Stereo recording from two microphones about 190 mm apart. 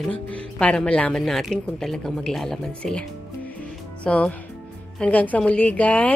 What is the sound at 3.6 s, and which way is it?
Music, 5° left (ahead or behind).